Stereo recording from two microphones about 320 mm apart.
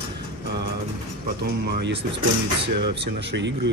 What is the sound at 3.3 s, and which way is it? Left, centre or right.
Speech, right.